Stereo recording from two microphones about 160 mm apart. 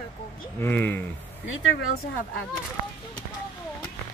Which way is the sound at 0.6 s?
10° left (ahead or behind).